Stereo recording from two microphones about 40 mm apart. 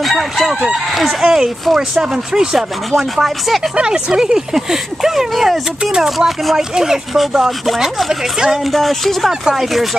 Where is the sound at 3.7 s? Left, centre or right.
Centre.